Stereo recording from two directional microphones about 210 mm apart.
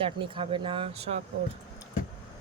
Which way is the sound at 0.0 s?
25° right (ahead or behind).